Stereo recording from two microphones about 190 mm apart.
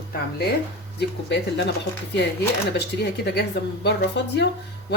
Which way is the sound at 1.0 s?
65° left (ahead or behind).